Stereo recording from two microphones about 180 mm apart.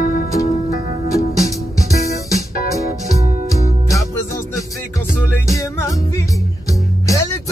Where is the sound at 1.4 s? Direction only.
20° left (ahead or behind).